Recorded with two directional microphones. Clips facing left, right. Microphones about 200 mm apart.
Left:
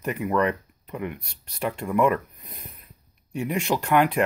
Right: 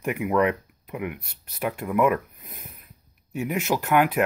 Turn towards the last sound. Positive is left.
turn(degrees=-5)  # may be behind; listen again after turning